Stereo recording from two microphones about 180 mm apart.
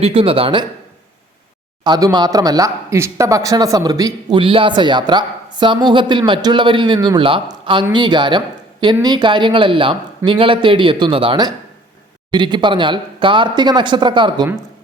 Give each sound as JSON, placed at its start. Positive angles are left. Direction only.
{"t": 0.0, "sound": "speech", "side_deg": -30}
{"t": 1.8, "sound": "speech", "side_deg": -20}